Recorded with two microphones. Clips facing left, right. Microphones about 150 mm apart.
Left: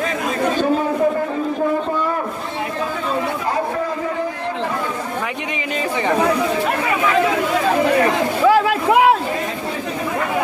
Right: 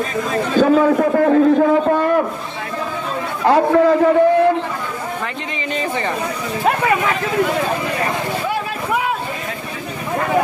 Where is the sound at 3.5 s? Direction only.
80° right.